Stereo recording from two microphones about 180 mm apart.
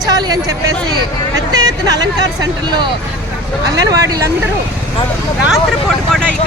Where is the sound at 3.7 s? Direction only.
20° right (ahead or behind).